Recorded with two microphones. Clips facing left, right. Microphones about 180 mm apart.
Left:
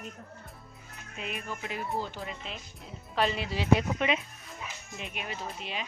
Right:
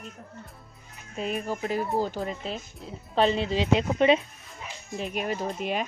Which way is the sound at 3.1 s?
25° right (ahead or behind).